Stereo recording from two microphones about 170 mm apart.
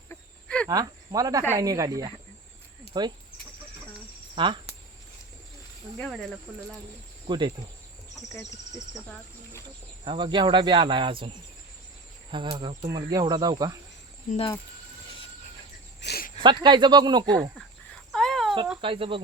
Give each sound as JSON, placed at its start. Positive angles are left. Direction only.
{"t": 0.1, "sound": "cricket", "side_deg": 5}
{"t": 0.7, "sound": "speech", "side_deg": -20}
{"t": 1.5, "sound": "cricket", "side_deg": -20}
{"t": 4.4, "sound": "speech", "side_deg": -30}
{"t": 6.0, "sound": "speech", "side_deg": 0}
{"t": 7.3, "sound": "cricket", "side_deg": -25}
{"t": 8.3, "sound": "speech", "side_deg": 15}
{"t": 10.0, "sound": "cricket", "side_deg": -30}
{"t": 12.3, "sound": "cricket", "side_deg": -30}
{"t": 14.3, "sound": "speech", "side_deg": 50}
{"t": 16.0, "sound": "a sound", "side_deg": 70}
{"t": 16.4, "sound": "cricket", "side_deg": -25}
{"t": 18.1, "sound": "a sound", "side_deg": 0}
{"t": 18.8, "sound": "speech", "side_deg": -30}